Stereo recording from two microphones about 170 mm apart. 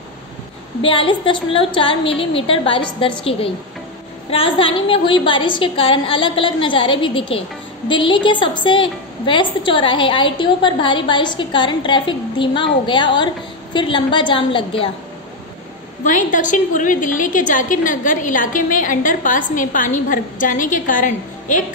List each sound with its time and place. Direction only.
0.8 s a woman's voice: 30° left (ahead or behind)
16.0 s a woman's voice: 50° left (ahead or behind)